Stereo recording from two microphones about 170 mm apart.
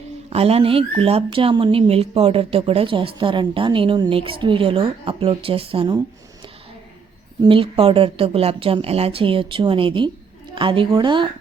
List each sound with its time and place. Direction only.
0.3 s speech: 35° right (ahead or behind)
7.4 s a woman's voice: 30° right (ahead or behind)